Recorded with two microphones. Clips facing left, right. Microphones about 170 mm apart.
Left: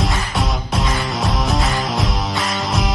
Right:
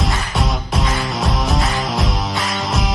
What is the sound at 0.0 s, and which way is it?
Music, centre (ahead or behind).